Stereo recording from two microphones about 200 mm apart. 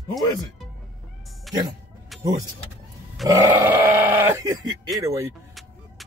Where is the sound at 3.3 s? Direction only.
15° right (ahead or behind).